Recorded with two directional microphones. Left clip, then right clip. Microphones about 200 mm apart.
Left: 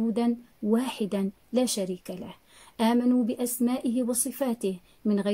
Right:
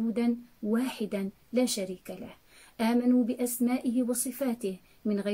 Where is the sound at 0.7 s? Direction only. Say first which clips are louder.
Left 4 dB; 45° left (ahead or behind).